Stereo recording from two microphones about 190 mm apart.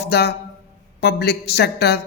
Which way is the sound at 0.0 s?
60° left (ahead or behind).